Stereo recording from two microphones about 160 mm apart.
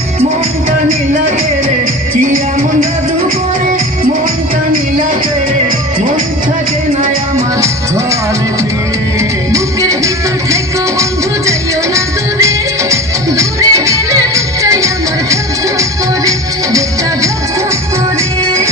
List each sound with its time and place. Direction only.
2.2 s music: 60° right (ahead or behind)
9.5 s music: 20° right (ahead or behind)